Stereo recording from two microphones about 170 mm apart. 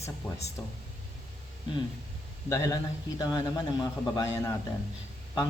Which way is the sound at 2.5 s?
20° left (ahead or behind).